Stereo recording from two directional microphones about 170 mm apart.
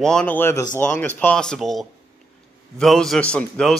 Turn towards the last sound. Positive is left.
turn(degrees=5)  # may be behind; listen again after turning